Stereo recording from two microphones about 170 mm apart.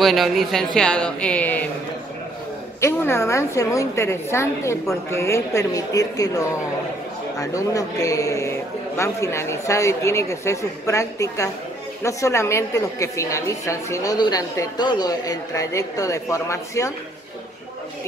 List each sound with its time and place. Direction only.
0.0 s speech: centre (ahead or behind)
2.8 s a man's voice: 15° left (ahead or behind)